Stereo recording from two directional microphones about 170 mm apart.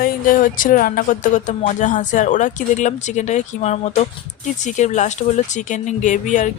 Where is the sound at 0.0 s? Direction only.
55° left (ahead or behind).